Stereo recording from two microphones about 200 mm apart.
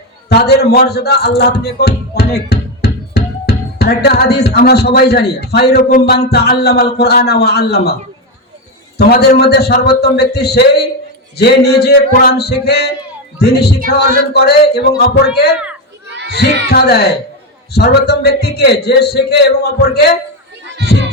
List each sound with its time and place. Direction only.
0.3 s speech: 55° left (ahead or behind)
2.1 s music: 55° left (ahead or behind)
9.0 s speech: 50° left (ahead or behind)
16.0 s children playing: 60° right (ahead or behind)
16.6 s speech: 55° left (ahead or behind)